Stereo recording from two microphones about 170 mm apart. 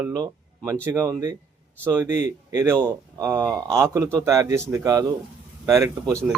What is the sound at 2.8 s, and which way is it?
A man's voice, 15° right (ahead or behind).